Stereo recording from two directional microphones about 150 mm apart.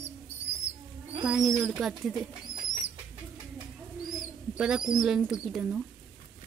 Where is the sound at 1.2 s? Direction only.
5° right (ahead or behind).